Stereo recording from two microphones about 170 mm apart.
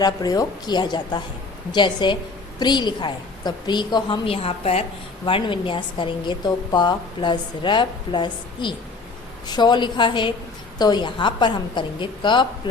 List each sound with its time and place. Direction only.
0.0 s a woman's voice: 25° left (ahead or behind)